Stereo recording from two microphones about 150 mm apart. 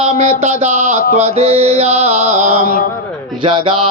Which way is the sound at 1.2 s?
45° right (ahead or behind).